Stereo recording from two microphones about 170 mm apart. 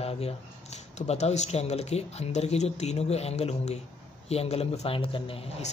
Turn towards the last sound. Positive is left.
turn(degrees=35)  # may be behind; listen again after turning